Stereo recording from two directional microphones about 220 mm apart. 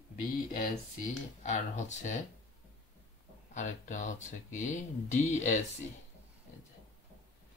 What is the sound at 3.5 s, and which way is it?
Speech, 35° left (ahead or behind).